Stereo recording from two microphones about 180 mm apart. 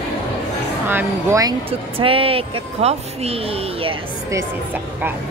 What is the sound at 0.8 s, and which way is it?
Speech, 15° right (ahead or behind).